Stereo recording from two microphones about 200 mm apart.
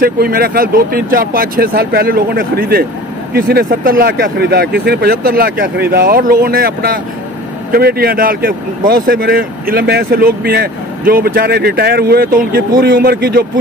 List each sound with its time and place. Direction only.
0.0 s speech: 50° right (ahead or behind)